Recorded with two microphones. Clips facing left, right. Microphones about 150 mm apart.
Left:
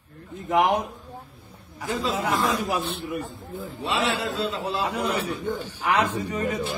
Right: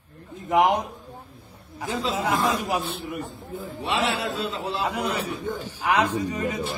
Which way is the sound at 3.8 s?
20° right (ahead or behind).